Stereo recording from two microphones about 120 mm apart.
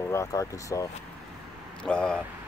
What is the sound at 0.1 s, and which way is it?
Speech, 25° left (ahead or behind).